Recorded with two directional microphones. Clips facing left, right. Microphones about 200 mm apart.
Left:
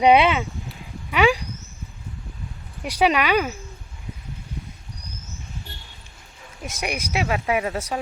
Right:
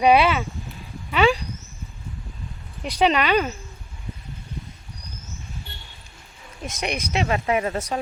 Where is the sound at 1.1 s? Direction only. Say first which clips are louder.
Even; 15° left (ahead or behind).